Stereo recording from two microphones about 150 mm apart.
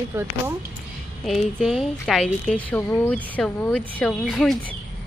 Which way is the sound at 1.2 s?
Centre (ahead or behind).